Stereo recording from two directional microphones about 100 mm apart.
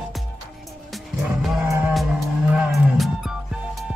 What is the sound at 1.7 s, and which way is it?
Music, 20° right (ahead or behind).